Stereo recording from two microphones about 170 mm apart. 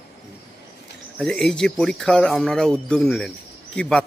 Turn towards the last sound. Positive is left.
turn(degrees=5)  # may be behind; listen again after turning